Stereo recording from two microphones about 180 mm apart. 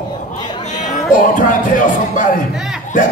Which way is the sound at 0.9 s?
45° left (ahead or behind).